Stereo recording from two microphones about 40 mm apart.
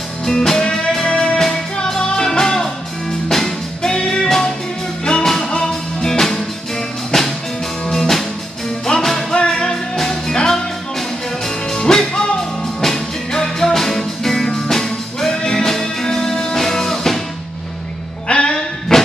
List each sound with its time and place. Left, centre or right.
0.2 s music: centre
18.3 s music: centre